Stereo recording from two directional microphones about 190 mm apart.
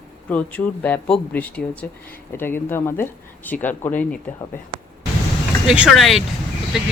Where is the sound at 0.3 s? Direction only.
5° left (ahead or behind).